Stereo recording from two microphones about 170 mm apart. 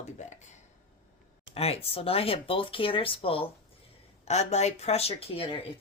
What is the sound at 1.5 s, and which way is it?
Speech, 35° left (ahead or behind).